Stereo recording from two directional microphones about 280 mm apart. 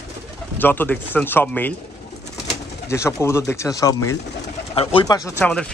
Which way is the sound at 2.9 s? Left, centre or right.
Centre.